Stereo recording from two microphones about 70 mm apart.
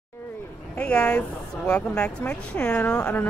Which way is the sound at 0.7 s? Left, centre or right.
Centre.